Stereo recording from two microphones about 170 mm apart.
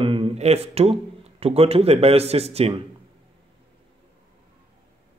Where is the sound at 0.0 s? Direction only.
30° right (ahead or behind).